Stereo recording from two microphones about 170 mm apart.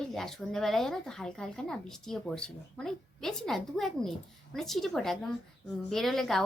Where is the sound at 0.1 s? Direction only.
Centre (ahead or behind).